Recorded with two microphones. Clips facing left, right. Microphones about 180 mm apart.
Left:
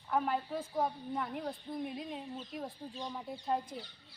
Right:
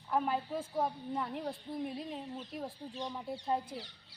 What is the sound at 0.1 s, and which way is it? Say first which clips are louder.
A woman's voice: even; centre (ahead or behind).